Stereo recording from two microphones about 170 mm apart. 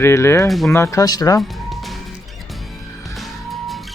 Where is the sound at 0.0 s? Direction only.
15° left (ahead or behind).